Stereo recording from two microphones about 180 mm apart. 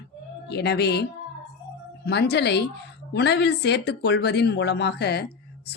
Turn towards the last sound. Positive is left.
turn(degrees=65)  # may be behind; listen again after turning